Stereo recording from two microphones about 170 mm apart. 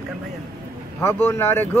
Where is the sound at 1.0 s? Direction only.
15° left (ahead or behind).